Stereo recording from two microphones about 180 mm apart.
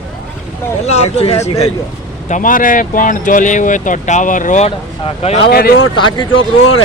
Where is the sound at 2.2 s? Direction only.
45° left (ahead or behind).